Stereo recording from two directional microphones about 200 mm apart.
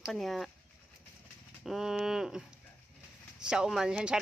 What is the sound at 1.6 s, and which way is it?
Speech, centre (ahead or behind).